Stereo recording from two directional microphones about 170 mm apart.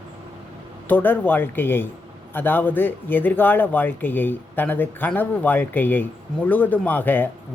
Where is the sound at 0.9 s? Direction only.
10° left (ahead or behind).